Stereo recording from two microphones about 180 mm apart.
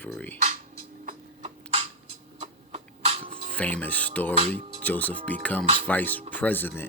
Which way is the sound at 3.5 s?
10° left (ahead or behind).